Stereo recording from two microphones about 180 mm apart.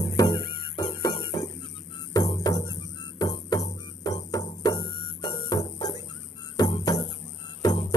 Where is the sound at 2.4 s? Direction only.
20° left (ahead or behind).